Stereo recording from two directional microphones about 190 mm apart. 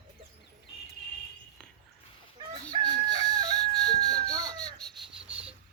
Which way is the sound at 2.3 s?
25° right (ahead or behind).